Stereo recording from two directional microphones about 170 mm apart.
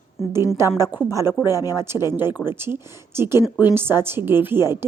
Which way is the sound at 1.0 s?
15° right (ahead or behind).